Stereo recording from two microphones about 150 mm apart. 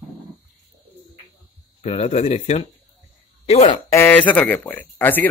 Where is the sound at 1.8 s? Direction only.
45° left (ahead or behind).